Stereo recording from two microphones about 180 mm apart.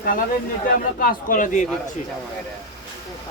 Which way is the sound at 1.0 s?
50° left (ahead or behind).